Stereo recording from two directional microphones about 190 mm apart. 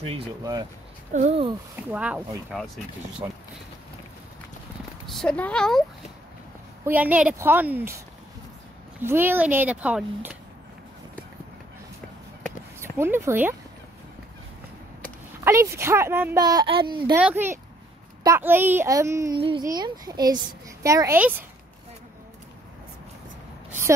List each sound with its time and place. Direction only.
0.4 s speech: 20° right (ahead or behind)
1.1 s speech: 35° right (ahead or behind)
1.9 s a child's voice: 10° right (ahead or behind)
5.0 s speech: 5° left (ahead or behind)
6.8 s a child's voice: 10° right (ahead or behind)
9.0 s a child's voice: 10° right (ahead or behind)
12.9 s a child's voice: 10° right (ahead or behind)
15.4 s a child's voice: 15° right (ahead or behind)
17.1 s a child's voice: 10° right (ahead or behind)